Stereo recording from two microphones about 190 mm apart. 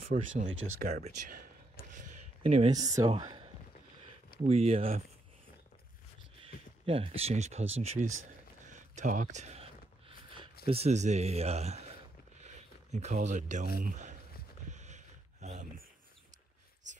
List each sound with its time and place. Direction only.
0.0 s speech: 45° right (ahead or behind)
0.5 s speech: 90° right
2.0 s a sound: 40° right (ahead or behind)
2.7 s speech: 20° right (ahead or behind)
4.5 s a man's voice: 30° right (ahead or behind)
6.9 s a man's voice: 30° right (ahead or behind)
8.6 s a sound: 40° right (ahead or behind)
10.7 s a man's voice: 35° right (ahead or behind)
12.9 s a man's voice: 40° right (ahead or behind)
14.7 s a sound: 40° right (ahead or behind)